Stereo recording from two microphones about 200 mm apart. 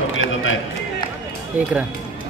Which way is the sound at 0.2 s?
75° left (ahead or behind).